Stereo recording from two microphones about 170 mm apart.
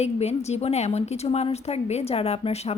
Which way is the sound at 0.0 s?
40° left (ahead or behind).